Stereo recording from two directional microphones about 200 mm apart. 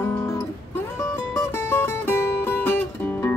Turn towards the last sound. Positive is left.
turn(degrees=10)  # may be behind; listen again after turning